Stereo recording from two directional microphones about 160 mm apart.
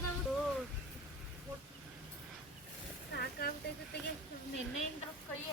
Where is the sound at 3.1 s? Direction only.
80° left.